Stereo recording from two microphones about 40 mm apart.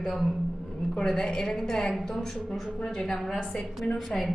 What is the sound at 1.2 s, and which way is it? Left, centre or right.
A woman's voice, centre.